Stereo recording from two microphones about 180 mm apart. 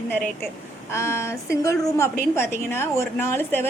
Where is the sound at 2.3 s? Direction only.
15° left (ahead or behind).